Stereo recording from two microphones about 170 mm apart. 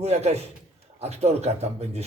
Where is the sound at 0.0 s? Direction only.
40° right (ahead or behind).